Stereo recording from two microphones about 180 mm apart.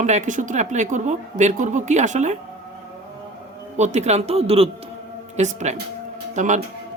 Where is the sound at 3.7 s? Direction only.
40° right (ahead or behind).